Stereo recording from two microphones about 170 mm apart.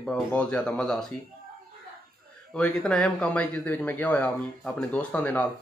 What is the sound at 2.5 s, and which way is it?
Speech, 5° left (ahead or behind).